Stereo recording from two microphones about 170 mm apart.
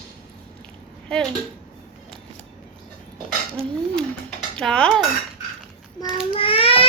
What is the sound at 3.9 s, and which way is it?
Dishes, 5° left (ahead or behind).